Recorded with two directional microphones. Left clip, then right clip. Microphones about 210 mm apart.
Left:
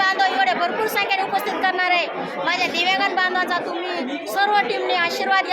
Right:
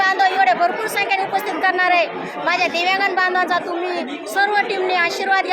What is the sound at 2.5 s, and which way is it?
A woman's voice, 5° right (ahead or behind).